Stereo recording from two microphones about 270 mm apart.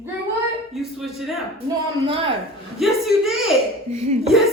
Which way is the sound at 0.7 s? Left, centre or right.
Centre.